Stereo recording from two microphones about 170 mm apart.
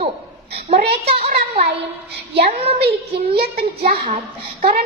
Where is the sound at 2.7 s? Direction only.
70° right (ahead or behind).